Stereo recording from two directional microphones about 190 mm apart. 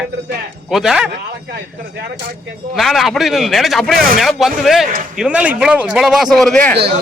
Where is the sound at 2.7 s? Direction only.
Centre (ahead or behind).